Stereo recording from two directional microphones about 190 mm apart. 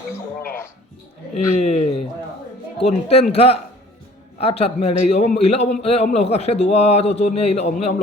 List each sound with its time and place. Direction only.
0.4 s speech: 10° left (ahead or behind)
1.5 s a man's voice: 35° left (ahead or behind)